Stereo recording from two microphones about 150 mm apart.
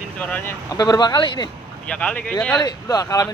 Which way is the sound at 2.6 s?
25° left (ahead or behind).